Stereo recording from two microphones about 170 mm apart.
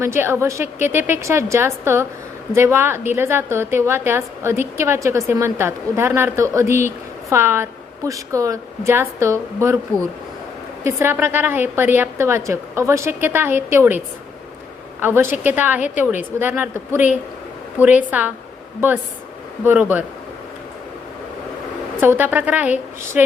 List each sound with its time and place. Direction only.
0.0 s speech: 15° right (ahead or behind)
10.8 s speech: 15° right (ahead or behind)
15.0 s speech: 15° right (ahead or behind)
19.6 s speech: 10° right (ahead or behind)
22.0 s speech: 10° right (ahead or behind)